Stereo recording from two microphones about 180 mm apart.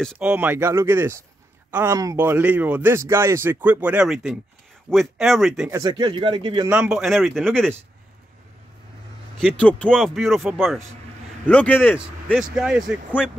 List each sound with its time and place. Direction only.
0.0 s a man's voice: centre (ahead or behind)
5.7 s speech: 25° right (ahead or behind)
6.7 s speech: 5° right (ahead or behind)
9.4 s a man's voice: 5° left (ahead or behind)
12.4 s speech: 5° right (ahead or behind)